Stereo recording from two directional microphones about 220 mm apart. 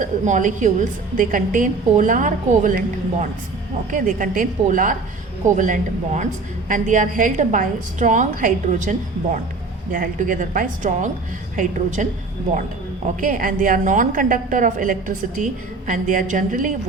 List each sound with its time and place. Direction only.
0.0 s a woman's voice: 35° right (ahead or behind)
3.9 s a woman's voice: 35° right (ahead or behind)
13.1 s a woman's voice: 40° right (ahead or behind)